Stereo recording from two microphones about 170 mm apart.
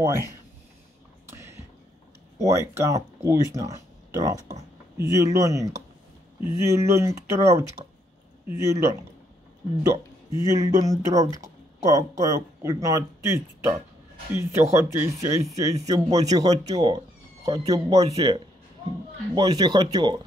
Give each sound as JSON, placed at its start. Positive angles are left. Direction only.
{"t": 0.0, "sound": "speech", "side_deg": -15}
{"t": 1.3, "sound": "a sound", "side_deg": -15}
{"t": 2.3, "sound": "speech", "side_deg": -20}
{"t": 8.7, "sound": "speech", "side_deg": -15}
{"t": 17.9, "sound": "speech", "side_deg": -35}
{"t": 19.3, "sound": "speech", "side_deg": -25}